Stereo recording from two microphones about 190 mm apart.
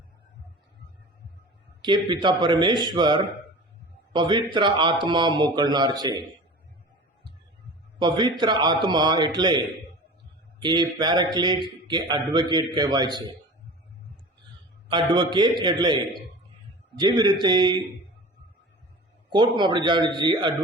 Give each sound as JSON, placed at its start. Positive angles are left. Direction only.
{"t": 1.8, "sound": "a man's voice", "side_deg": -25}
{"t": 7.9, "sound": "a man's voice", "side_deg": -25}
{"t": 14.8, "sound": "a man's voice", "side_deg": -25}
{"t": 19.3, "sound": "a man's voice", "side_deg": -25}